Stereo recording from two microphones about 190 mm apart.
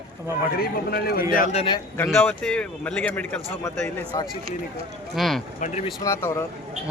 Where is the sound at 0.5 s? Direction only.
55° left (ahead or behind).